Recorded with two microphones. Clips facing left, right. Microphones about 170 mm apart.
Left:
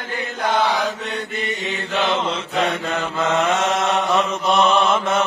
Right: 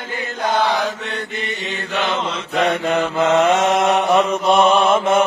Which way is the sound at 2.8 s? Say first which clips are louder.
Right 5 dB; 15° right (ahead or behind).